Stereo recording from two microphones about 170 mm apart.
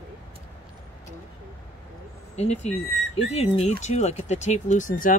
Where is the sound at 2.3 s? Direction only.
40° left (ahead or behind).